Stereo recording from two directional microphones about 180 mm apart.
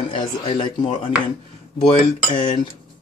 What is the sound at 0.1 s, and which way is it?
Speech, 30° left (ahead or behind).